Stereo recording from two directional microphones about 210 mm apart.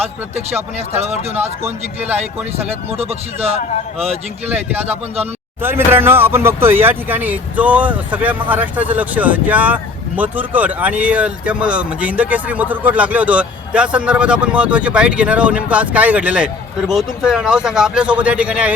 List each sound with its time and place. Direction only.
0.9 s speech: 30° right (ahead or behind)
3.0 s a man's voice: 30° right (ahead or behind)
5.6 s a man's voice: 10° right (ahead or behind)